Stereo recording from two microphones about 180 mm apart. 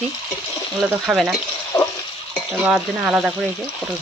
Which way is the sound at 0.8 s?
Centre (ahead or behind).